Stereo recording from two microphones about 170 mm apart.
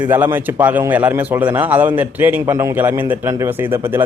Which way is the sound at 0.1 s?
10° right (ahead or behind).